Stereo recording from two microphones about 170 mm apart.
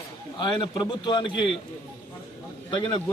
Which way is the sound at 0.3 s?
25° left (ahead or behind).